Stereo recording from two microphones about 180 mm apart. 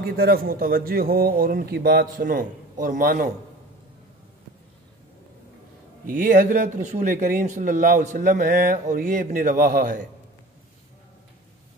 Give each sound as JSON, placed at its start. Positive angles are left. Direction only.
{"t": 0.0, "sound": "a man's voice", "side_deg": -60}
{"t": 6.0, "sound": "a man's voice", "side_deg": -45}